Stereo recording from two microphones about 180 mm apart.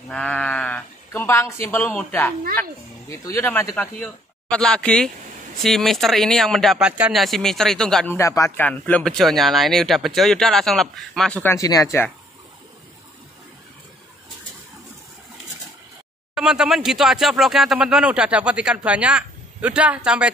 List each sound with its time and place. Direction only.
0.1 s speech: 5° left (ahead or behind)
8.2 s speech: 15° left (ahead or behind)
11.5 s speech: 20° left (ahead or behind)
16.3 s speech: 5° right (ahead or behind)